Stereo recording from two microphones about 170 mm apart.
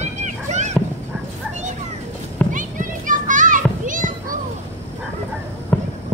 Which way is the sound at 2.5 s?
50° right (ahead or behind).